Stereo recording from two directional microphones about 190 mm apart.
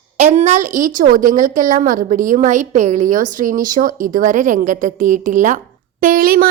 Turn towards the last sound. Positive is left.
turn(degrees=-50)  # may be behind; listen again after turning